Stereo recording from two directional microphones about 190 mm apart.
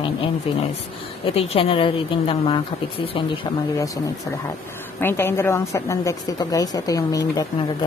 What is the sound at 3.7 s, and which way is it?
A woman's voice, 15° left (ahead or behind).